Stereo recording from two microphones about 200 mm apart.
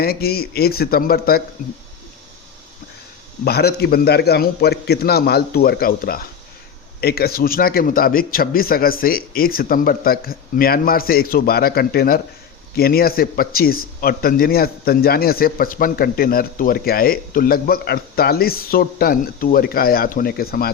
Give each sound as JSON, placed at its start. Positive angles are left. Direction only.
{"t": 0.0, "sound": "a man's voice", "side_deg": 50}
{"t": 3.4, "sound": "a man's voice", "side_deg": 50}